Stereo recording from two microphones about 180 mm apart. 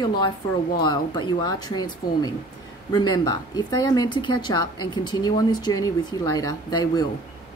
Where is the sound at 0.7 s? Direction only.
25° left (ahead or behind).